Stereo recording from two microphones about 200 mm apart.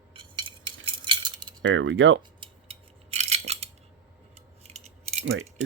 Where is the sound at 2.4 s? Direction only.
30° right (ahead or behind).